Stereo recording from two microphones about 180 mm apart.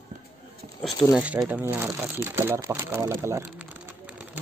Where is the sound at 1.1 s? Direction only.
5° right (ahead or behind).